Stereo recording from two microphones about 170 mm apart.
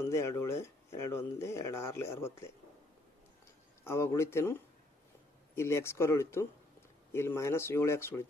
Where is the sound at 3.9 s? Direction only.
15° left (ahead or behind).